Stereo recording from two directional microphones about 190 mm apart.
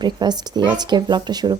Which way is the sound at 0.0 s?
20° right (ahead or behind).